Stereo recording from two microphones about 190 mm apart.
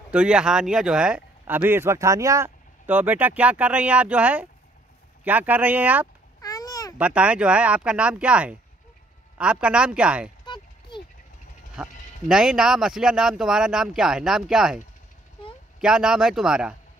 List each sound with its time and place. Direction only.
0.1 s speech: 5° right (ahead or behind)
6.4 s babbling: 20° left (ahead or behind)
7.0 s speech: 5° right (ahead or behind)
10.4 s a sound: 25° left (ahead or behind)
11.7 s speech: 5° right (ahead or behind)
15.8 s speech: 5° right (ahead or behind)